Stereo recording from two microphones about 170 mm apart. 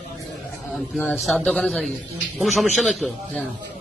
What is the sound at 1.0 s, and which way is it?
A man's voice, 5° left (ahead or behind).